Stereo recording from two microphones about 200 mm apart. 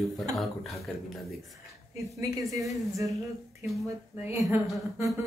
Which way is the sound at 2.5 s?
15° right (ahead or behind).